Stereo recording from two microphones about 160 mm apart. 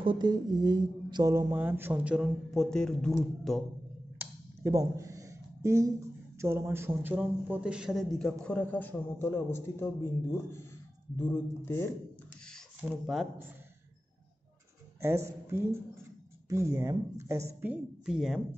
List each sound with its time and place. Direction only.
0.0 s speech: 30° right (ahead or behind); by 3.2 s 5° left (ahead or behind)
4.2 s speech: 20° right (ahead or behind); by 9.8 s 15° left (ahead or behind)
11.1 s speech: 15° left (ahead or behind)
12.9 s speech: centre (ahead or behind)
15.0 s speech: 15° right (ahead or behind)